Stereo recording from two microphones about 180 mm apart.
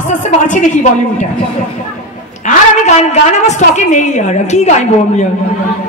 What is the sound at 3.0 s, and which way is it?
A woman's voice, 40° left (ahead or behind).